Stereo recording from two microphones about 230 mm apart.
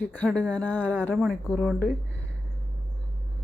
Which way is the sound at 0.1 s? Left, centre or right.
Centre.